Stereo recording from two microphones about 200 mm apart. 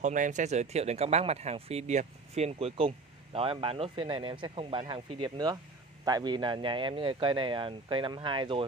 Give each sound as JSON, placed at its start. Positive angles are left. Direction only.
{"t": 0.0, "sound": "speech", "side_deg": -40}